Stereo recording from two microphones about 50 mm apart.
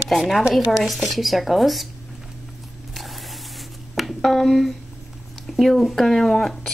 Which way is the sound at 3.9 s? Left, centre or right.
Centre.